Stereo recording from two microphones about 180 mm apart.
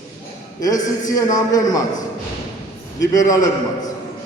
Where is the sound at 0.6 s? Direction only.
20° left (ahead or behind).